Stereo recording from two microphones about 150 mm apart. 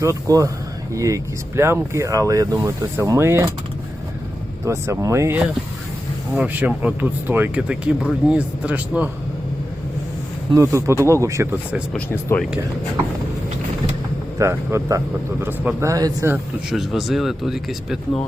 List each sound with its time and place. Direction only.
0.0 s speech: 20° right (ahead or behind)
4.6 s speech: 20° right (ahead or behind)
6.3 s speech: 10° right (ahead or behind)
10.5 s speech: 20° right (ahead or behind)
11.9 s speech: 15° left (ahead or behind)
14.3 s speech: 20° right (ahead or behind)
16.3 s speech: 5° right (ahead or behind)